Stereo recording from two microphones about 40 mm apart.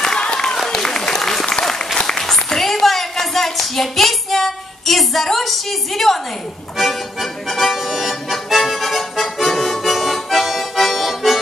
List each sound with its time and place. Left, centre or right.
0.2 s applause: centre
2.0 s a sound: centre
6.8 s music: centre